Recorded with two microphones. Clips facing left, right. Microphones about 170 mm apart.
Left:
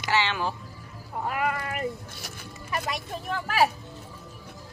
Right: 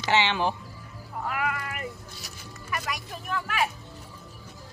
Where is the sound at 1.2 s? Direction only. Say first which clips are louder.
Left 2 dB; 35° left (ahead or behind); by 2.4 s 50° left (ahead or behind).